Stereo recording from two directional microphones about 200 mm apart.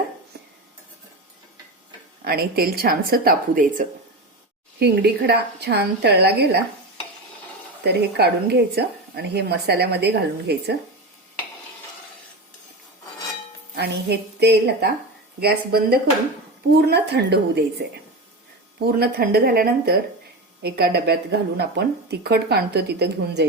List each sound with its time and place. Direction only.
2.2 s a woman's voice: 50° right (ahead or behind)
4.8 s speech: 55° right (ahead or behind)
7.9 s speech: 55° right (ahead or behind)
13.7 s a woman's voice: 55° right (ahead or behind)
18.9 s a woman's voice: 50° right (ahead or behind)